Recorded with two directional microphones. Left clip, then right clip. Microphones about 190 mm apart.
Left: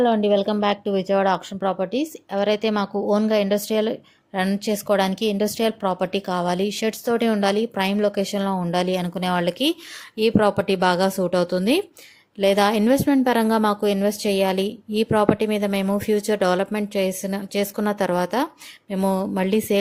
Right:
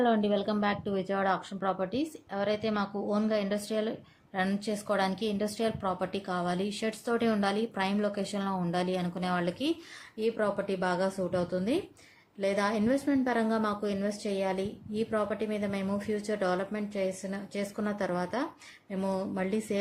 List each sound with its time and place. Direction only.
0.0 s a woman's voice: 30° left (ahead or behind); by 19.8 s 45° left (ahead or behind)